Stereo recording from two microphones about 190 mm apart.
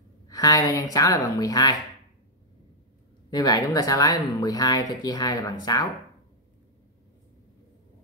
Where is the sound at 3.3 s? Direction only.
20° left (ahead or behind).